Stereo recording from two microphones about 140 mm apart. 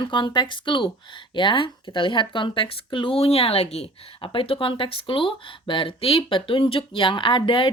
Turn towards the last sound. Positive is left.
turn(degrees=35)  # may be behind; listen again after turning